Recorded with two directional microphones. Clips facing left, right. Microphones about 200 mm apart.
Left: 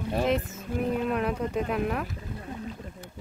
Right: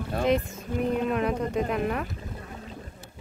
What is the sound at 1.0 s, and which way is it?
Speech, centre (ahead or behind).